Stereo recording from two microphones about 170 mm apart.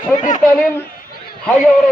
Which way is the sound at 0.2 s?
45° left (ahead or behind).